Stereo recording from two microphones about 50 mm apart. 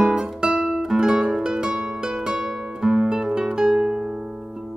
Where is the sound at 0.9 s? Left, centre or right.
Centre.